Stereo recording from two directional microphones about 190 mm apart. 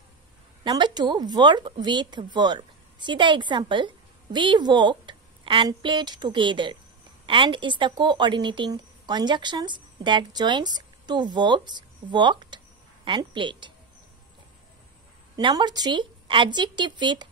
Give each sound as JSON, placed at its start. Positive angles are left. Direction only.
{"t": 0.7, "sound": "a woman's voice", "side_deg": -25}
{"t": 15.3, "sound": "a woman's voice", "side_deg": -20}